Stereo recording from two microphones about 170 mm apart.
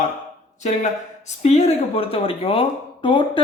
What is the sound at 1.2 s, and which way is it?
Speech, 40° left (ahead or behind).